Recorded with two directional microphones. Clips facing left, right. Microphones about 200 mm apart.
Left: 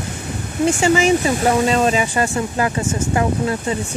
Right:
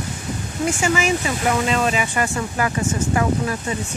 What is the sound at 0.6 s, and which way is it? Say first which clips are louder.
Speech: left 5 dB; 30° left (ahead or behind).